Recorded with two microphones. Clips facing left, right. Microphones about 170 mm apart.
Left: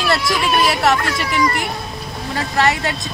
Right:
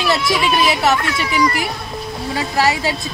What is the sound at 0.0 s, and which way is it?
Speech, centre (ahead or behind).